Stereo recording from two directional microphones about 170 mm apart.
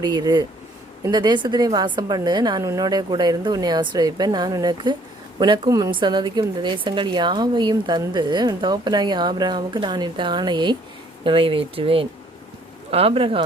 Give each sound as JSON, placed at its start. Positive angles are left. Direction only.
{"t": 0.0, "sound": "a woman's voice", "side_deg": -25}